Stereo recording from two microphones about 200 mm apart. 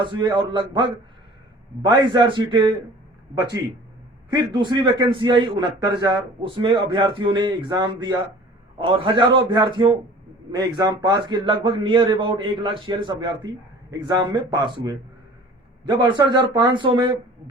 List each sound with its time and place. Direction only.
0.0 s a man's voice: 20° right (ahead or behind)
4.3 s a man's voice: 20° right (ahead or behind)